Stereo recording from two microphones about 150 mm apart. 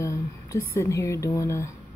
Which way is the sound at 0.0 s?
20° left (ahead or behind).